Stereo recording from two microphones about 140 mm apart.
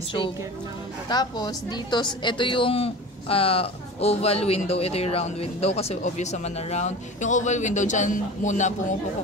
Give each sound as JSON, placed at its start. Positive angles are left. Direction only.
{"t": 1.0, "sound": "a woman's voice", "side_deg": 30}